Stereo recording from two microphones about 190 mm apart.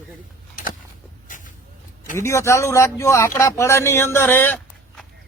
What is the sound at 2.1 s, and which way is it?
Speech, 15° left (ahead or behind).